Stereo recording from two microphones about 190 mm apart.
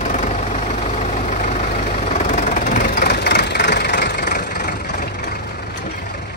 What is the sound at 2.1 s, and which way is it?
Vehicle, 40° left (ahead or behind).